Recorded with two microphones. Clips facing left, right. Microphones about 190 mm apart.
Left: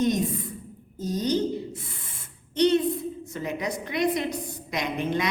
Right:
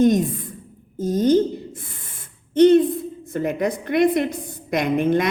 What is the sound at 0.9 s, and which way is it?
Speech, 50° right (ahead or behind).